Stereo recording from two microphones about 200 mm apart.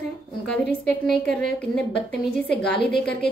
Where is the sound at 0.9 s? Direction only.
5° left (ahead or behind).